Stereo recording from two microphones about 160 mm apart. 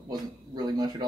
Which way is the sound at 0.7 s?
25° right (ahead or behind).